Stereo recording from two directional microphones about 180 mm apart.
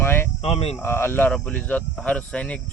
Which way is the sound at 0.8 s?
10° left (ahead or behind).